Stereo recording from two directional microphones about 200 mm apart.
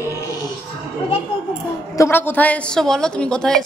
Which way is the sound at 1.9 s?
10° left (ahead or behind).